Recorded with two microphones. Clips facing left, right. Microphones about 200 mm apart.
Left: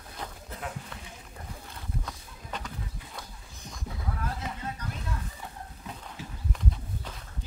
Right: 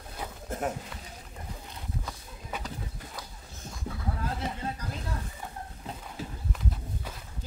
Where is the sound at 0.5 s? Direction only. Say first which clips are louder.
Right 10 dB; 50° right (ahead or behind).